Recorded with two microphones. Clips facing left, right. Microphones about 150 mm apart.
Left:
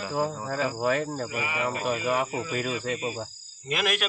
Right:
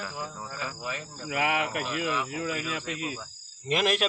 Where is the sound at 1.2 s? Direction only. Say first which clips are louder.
Right 2 dB; 75° right (ahead or behind).